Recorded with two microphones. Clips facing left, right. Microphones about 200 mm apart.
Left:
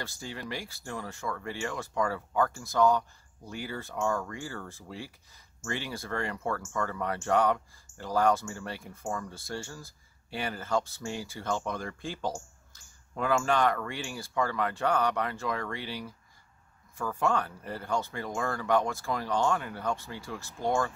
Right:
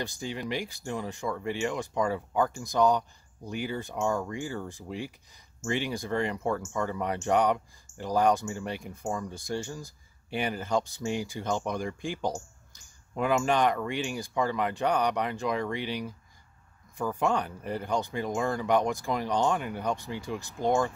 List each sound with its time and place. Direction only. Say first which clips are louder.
0.0 s speech: right 5 dB; 15° right (ahead or behind)